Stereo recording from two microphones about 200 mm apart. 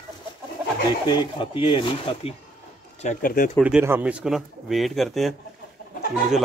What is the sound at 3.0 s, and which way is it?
Speech, 45° left (ahead or behind).